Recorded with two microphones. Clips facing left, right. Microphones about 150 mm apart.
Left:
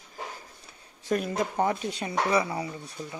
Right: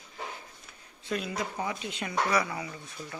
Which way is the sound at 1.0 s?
45° left (ahead or behind).